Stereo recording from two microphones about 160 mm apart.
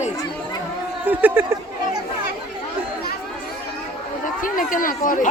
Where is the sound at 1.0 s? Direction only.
10° right (ahead or behind).